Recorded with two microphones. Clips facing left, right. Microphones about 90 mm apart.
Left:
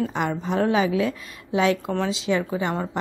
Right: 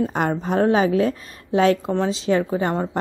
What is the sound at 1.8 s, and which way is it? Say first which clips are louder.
A woman's voice: right 3 dB; 30° right (ahead or behind).